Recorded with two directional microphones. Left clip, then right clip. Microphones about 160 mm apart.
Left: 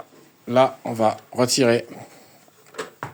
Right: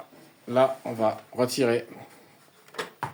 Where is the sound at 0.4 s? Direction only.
50° left (ahead or behind).